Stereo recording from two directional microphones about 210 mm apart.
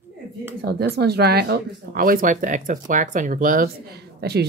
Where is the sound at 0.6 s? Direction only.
50° right (ahead or behind).